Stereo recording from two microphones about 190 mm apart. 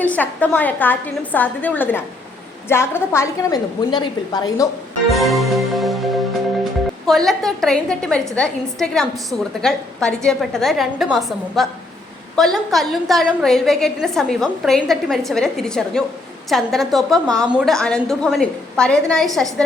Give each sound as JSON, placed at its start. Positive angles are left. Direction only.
{"t": 0.0, "sound": "a woman's voice", "side_deg": 10}
{"t": 5.1, "sound": "music", "side_deg": 0}
{"t": 7.1, "sound": "a woman's voice", "side_deg": 0}
{"t": 17.2, "sound": "a woman's voice", "side_deg": -20}
{"t": 17.5, "sound": "a woman's voice", "side_deg": 5}